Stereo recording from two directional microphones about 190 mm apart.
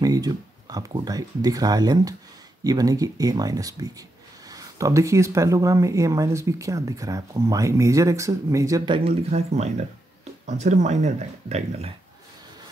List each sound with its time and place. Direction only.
0.0 s speech: 20° right (ahead or behind); by 11.9 s 35° right (ahead or behind)